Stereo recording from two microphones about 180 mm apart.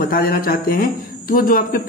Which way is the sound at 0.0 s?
55° left (ahead or behind).